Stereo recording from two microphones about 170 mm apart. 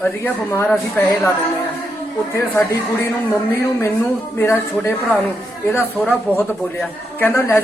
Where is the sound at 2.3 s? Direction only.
15° left (ahead or behind).